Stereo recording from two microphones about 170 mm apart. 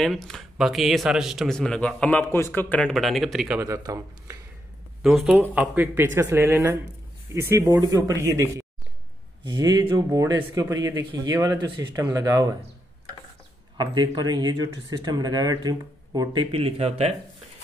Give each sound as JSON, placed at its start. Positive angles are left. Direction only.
{"t": 0.0, "sound": "speech", "side_deg": 0}
{"t": 3.5, "sound": "speech", "side_deg": -20}
{"t": 5.0, "sound": "speech", "side_deg": 0}
{"t": 13.7, "sound": "speech", "side_deg": -25}